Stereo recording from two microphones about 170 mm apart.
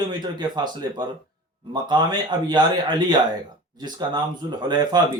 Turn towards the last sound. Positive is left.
turn(degrees=-25)  # may be behind; listen again after turning